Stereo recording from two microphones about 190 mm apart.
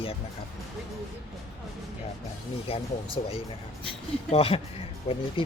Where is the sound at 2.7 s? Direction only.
30° left (ahead or behind).